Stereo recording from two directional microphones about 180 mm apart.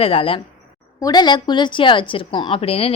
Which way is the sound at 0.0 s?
30° left (ahead or behind).